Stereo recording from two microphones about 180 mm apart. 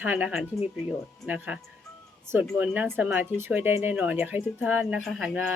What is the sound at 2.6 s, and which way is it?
Speech, 10° right (ahead or behind).